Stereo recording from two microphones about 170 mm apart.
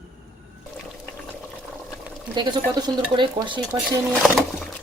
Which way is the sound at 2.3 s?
25° right (ahead or behind).